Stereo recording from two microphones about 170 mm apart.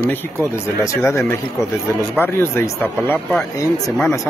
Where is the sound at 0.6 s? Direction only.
15° left (ahead or behind).